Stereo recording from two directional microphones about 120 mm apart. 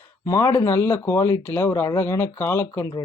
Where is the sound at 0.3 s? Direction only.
25° left (ahead or behind).